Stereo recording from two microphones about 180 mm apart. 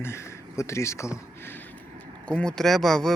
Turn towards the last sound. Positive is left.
turn(degrees=0)  # may be behind; listen again after turning